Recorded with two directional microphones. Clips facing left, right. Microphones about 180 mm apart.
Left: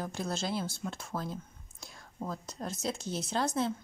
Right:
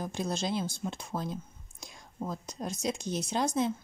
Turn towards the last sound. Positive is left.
turn(degrees=-15)  # may be behind; listen again after turning